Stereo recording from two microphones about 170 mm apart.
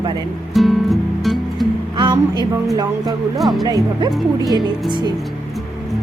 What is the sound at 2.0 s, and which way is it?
Music, 25° right (ahead or behind).